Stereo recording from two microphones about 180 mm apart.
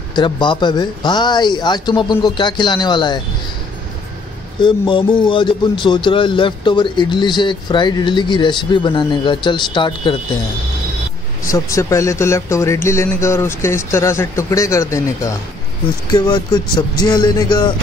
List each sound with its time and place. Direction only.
0.1 s speech: 25° left (ahead or behind)
4.6 s speech: 25° left (ahead or behind)
11.5 s speech: 15° left (ahead or behind)